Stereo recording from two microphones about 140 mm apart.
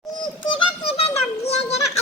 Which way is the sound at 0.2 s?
35° left (ahead or behind).